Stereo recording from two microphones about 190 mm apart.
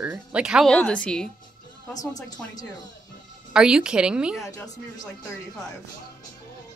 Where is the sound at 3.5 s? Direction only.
5° right (ahead or behind).